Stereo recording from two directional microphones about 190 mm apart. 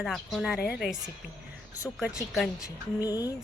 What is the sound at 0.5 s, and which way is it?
Speech, 55° left (ahead or behind).